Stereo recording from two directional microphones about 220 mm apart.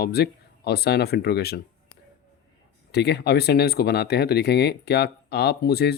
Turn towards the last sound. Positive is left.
turn(degrees=45)  # may be behind; listen again after turning